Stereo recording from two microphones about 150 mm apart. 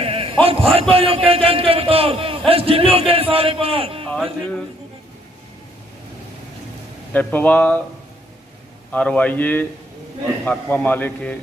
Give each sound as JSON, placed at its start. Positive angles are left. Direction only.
{"t": 0.0, "sound": "a man's voice", "side_deg": -40}
{"t": 4.1, "sound": "speech", "side_deg": 5}
{"t": 7.1, "sound": "speech", "side_deg": 10}
{"t": 8.9, "sound": "speech", "side_deg": 10}